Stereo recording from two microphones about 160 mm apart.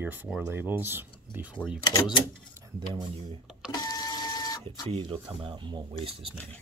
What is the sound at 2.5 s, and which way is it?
Speech, 25° right (ahead or behind).